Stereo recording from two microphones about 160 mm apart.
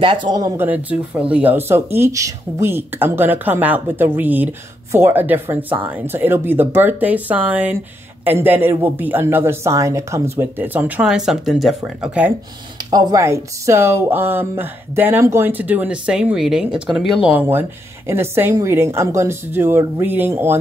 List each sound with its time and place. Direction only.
0.0 s speech: 30° right (ahead or behind)
0.6 s speech: 10° right (ahead or behind)
12.9 s speech: 20° right (ahead or behind)